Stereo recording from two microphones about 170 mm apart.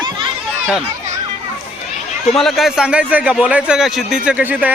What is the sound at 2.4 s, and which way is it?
A man's voice, centre (ahead or behind).